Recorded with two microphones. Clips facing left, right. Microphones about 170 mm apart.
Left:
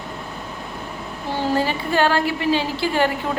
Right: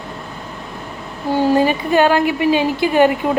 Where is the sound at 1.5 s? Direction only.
15° right (ahead or behind).